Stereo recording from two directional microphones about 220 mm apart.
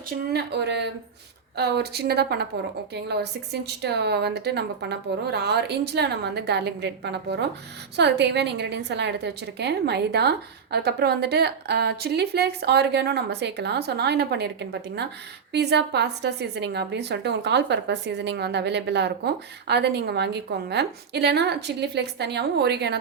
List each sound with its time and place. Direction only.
0.3 s a woman's voice: 50° right (ahead or behind)